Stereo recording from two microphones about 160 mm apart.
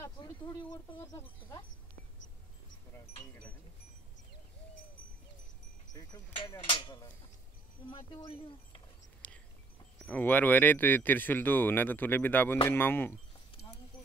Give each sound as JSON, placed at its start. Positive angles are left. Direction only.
{"t": 0.2, "sound": "speech", "side_deg": 25}
{"t": 5.9, "sound": "speech", "side_deg": 25}
{"t": 9.2, "sound": "a sound", "side_deg": 10}
{"t": 10.0, "sound": "speech", "side_deg": 10}